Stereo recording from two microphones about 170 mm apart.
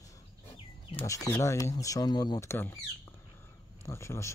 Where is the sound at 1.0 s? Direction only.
20° left (ahead or behind).